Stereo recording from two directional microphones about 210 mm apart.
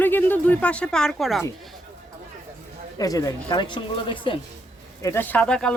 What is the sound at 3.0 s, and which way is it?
Speech, 15° left (ahead or behind).